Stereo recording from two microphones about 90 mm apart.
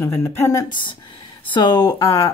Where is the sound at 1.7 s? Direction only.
45° left (ahead or behind).